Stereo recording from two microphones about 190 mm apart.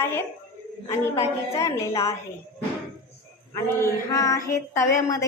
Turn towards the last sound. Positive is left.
turn(degrees=15)  # may be behind; listen again after turning